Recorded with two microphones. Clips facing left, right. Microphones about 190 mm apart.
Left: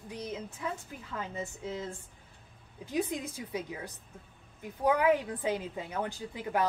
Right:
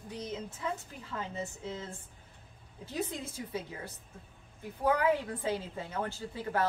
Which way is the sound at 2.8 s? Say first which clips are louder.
Left 4 dB; 15° left (ahead or behind).